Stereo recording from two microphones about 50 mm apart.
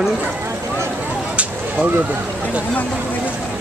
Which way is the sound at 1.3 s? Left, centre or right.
Right.